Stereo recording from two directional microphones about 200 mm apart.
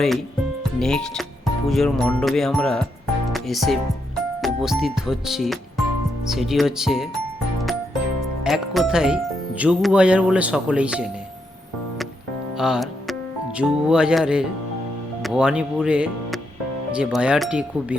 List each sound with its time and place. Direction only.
0.8 s speech: 5° left (ahead or behind)
8.4 s speech: centre (ahead or behind)
12.5 s music: 5° right (ahead or behind)
13.6 s speech: 5° right (ahead or behind)